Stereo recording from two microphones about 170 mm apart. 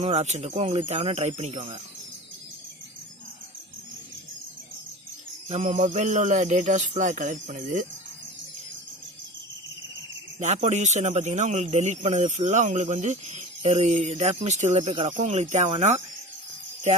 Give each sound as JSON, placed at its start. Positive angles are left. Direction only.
{"t": 0.0, "sound": "a man's voice", "side_deg": -40}
{"t": 5.5, "sound": "speech", "side_deg": -40}
{"t": 10.4, "sound": "a man's voice", "side_deg": -40}